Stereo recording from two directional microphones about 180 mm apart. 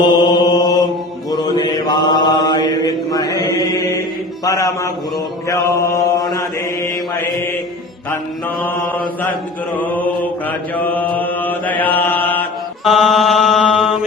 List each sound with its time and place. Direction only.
0.0 s mantra: 25° left (ahead or behind)
4.4 s a sound: 15° left (ahead or behind)
5.5 s mantra: 20° left (ahead or behind)
9.7 s mantra: 10° left (ahead or behind)